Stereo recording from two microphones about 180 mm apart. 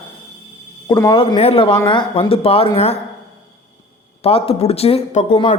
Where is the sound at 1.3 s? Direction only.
35° left (ahead or behind).